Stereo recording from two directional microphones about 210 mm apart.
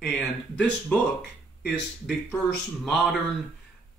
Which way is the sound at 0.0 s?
5° left (ahead or behind).